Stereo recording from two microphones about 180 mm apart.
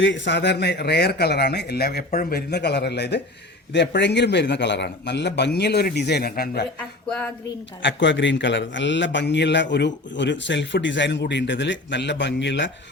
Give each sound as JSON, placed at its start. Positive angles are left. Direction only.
{"t": 0.0, "sound": "a man's voice", "side_deg": 85}
{"t": 7.8, "sound": "a man's voice", "side_deg": 85}